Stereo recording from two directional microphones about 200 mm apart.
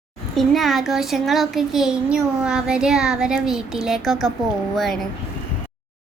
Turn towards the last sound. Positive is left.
turn(degrees=0)  # may be behind; listen again after turning